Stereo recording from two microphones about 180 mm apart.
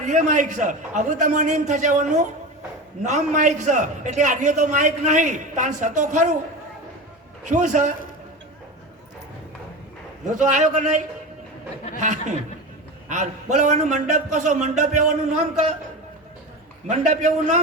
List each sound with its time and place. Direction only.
0.1 s a man's voice: 45° right (ahead or behind)
7.4 s a man's voice: 45° right (ahead or behind)
10.3 s a man's voice: 45° right (ahead or behind)
17.1 s a man's voice: 40° right (ahead or behind)